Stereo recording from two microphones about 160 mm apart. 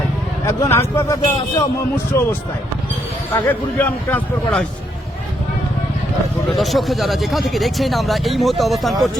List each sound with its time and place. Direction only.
0.4 s a man's voice: 15° left (ahead or behind)
3.4 s a man's voice: 10° left (ahead or behind)
6.6 s speech: centre (ahead or behind)